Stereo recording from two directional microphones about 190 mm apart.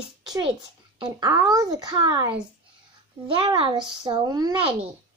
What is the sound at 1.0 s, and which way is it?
Speech, 20° right (ahead or behind).